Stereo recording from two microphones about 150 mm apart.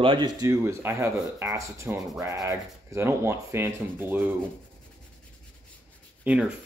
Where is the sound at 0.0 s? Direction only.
30° right (ahead or behind); by 4.3 s 15° right (ahead or behind).